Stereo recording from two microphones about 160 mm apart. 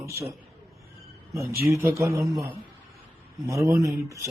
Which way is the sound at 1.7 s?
20° right (ahead or behind).